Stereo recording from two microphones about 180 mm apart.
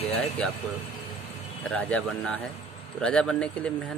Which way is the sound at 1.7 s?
5° left (ahead or behind).